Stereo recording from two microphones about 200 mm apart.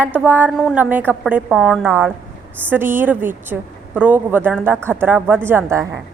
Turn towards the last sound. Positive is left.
turn(degrees=-10)  # may be behind; listen again after turning